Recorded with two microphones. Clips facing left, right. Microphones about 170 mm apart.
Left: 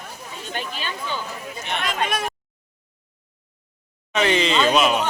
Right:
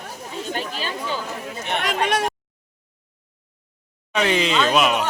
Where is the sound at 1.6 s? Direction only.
65° right (ahead or behind).